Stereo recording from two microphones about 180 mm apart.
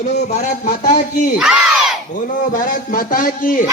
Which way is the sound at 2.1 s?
50° left (ahead or behind).